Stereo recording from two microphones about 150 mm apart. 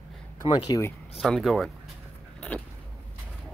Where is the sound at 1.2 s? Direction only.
Centre (ahead or behind).